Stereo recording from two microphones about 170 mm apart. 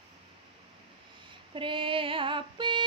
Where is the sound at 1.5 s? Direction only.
30° right (ahead or behind).